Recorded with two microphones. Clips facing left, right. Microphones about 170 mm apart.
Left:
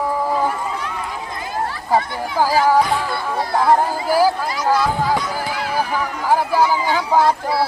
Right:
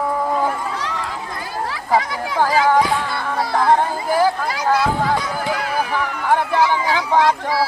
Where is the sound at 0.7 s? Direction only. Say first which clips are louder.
Right 1 dB; 90° right.